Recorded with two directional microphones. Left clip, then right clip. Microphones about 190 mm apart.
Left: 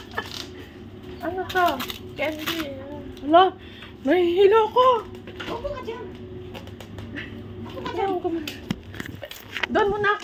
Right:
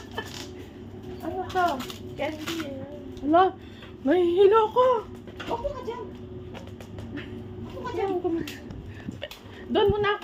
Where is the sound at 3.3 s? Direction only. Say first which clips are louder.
Left 4 dB; 5° right (ahead or behind).